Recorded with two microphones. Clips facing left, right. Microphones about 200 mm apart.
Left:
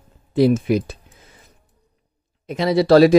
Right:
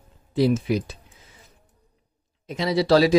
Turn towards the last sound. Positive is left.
turn(degrees=55)  # may be behind; listen again after turning